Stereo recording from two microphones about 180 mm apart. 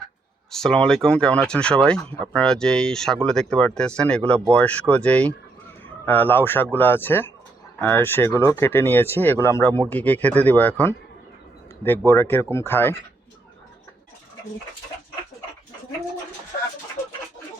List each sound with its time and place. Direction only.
0.5 s speech: 5° left (ahead or behind)